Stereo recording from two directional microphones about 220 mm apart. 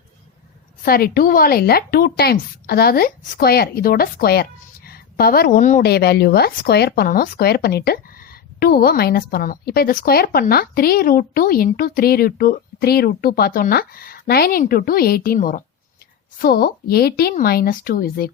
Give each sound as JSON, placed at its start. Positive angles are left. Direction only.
{"t": 0.8, "sound": "a woman's voice", "side_deg": 40}